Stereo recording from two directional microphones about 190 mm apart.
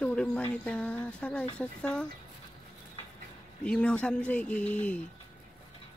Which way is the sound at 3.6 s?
5° left (ahead or behind).